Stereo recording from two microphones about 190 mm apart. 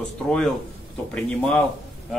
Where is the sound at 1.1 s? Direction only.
5° left (ahead or behind).